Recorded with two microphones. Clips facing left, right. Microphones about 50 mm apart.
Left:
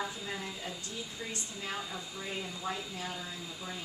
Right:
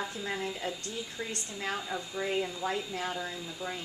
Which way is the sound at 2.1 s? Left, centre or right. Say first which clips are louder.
Right 10 dB; right.